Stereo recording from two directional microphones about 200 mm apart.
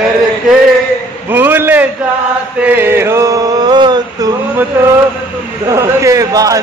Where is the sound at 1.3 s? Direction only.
10° right (ahead or behind).